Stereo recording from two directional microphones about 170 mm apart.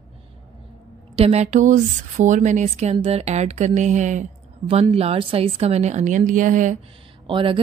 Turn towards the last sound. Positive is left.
turn(degrees=-30)  # may be behind; listen again after turning